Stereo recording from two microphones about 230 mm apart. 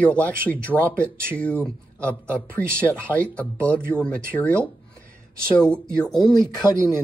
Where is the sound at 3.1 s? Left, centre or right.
Centre.